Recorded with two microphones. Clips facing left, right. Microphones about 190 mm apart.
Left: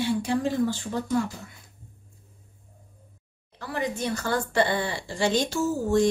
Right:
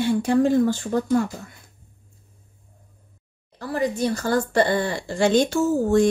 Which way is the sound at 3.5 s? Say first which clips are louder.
Right 6 dB; 35° right (ahead or behind).